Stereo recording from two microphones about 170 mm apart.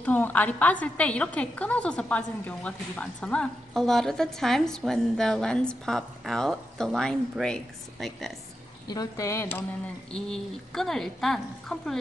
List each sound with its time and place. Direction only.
0.0 s a woman's voice: 10° left (ahead or behind)
8.8 s speech: 20° left (ahead or behind)
10.1 s a woman's voice: 5° left (ahead or behind)